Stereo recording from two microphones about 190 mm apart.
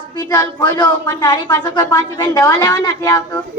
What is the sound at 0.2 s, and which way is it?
A man's voice, 20° left (ahead or behind).